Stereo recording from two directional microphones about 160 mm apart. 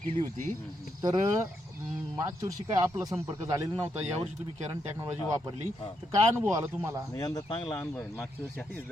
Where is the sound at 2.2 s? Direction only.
20° right (ahead or behind).